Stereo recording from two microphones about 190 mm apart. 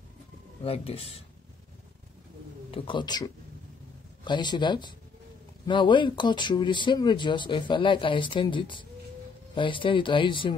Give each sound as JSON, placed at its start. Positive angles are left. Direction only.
{"t": 0.7, "sound": "speech", "side_deg": 30}
{"t": 2.7, "sound": "speech", "side_deg": 25}